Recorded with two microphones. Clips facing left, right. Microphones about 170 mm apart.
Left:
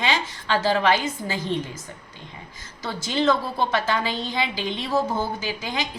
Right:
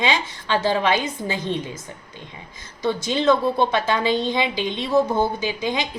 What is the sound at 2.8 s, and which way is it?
A woman's voice, 20° right (ahead or behind).